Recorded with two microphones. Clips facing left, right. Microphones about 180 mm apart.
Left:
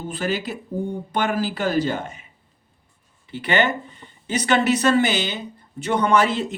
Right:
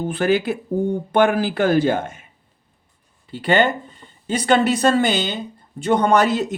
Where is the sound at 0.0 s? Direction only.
60° right (ahead or behind).